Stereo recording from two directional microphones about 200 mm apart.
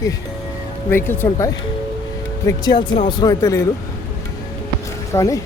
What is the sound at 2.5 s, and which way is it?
Speech, 20° left (ahead or behind).